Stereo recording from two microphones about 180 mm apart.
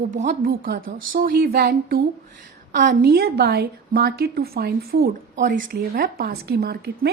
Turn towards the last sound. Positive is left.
turn(degrees=-60)  # may be behind; listen again after turning